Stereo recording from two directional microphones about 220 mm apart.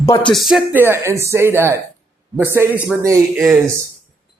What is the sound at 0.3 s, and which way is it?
Speech, centre (ahead or behind).